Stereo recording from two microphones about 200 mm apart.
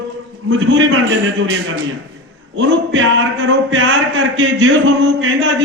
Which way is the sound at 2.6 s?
70° right (ahead or behind).